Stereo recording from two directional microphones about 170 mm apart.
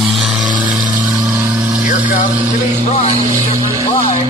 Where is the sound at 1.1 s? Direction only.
15° right (ahead or behind).